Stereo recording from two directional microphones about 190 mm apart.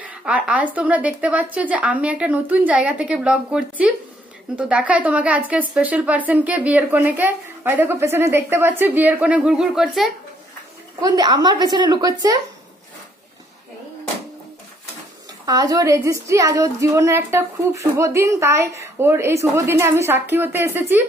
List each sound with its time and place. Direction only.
0.0 s a woman's voice: 5° right (ahead or behind)
11.0 s a woman's voice: 20° right (ahead or behind)
15.4 s a woman's voice: 20° right (ahead or behind)